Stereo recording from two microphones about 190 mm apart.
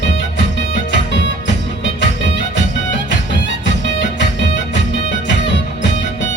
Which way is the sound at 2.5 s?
70° left (ahead or behind).